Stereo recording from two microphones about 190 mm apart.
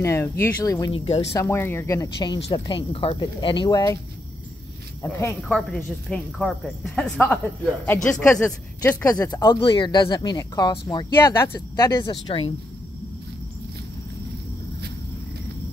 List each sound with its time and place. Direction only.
0.0 s speech: 15° left (ahead or behind); by 1.3 s 30° left (ahead or behind)
1.3 s speech: 15° left (ahead or behind)
5.0 s speech: 5° left (ahead or behind); by 12.5 s 25° left (ahead or behind)